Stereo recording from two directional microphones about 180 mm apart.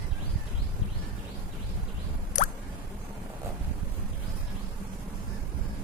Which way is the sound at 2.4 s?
45° left (ahead or behind).